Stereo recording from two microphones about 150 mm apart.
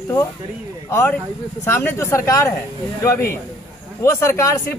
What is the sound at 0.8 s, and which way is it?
A man's voice, 15° left (ahead or behind).